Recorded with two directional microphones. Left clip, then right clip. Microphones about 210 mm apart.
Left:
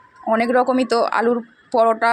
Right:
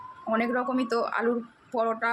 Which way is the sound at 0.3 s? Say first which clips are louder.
Left 10 dB; 35° left (ahead or behind).